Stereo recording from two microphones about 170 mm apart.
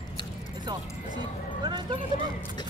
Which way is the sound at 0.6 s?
25° right (ahead or behind).